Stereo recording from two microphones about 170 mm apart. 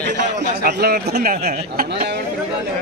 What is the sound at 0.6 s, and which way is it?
Speech, 75° right (ahead or behind).